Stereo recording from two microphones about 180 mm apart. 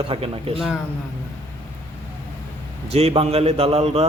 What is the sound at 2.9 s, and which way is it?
A man's voice, 35° right (ahead or behind).